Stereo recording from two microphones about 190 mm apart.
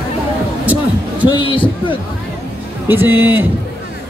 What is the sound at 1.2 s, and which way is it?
Speech, 25° left (ahead or behind).